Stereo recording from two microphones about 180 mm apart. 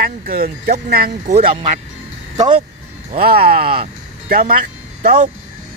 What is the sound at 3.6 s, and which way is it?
Speech, 30° right (ahead or behind).